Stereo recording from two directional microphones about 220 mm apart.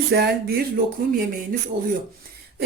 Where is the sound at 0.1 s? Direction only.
45° right (ahead or behind).